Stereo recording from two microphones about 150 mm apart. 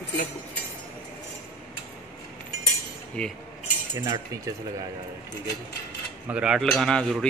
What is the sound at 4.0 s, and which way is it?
Cutlery, 25° right (ahead or behind).